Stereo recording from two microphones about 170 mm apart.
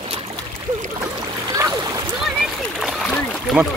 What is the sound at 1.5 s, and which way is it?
Splash, 20° right (ahead or behind).